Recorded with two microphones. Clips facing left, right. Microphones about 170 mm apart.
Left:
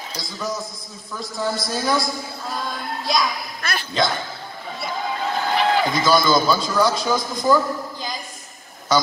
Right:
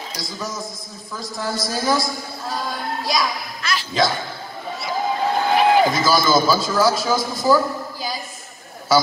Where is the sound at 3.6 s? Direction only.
55° left (ahead or behind).